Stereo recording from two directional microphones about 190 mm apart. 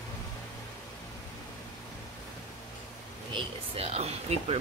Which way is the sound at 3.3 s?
35° right (ahead or behind).